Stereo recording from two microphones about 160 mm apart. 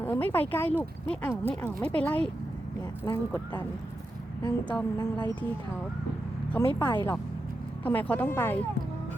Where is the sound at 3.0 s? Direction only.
25° left (ahead or behind).